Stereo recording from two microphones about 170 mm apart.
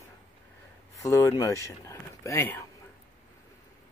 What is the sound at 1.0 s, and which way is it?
Speech, 20° left (ahead or behind).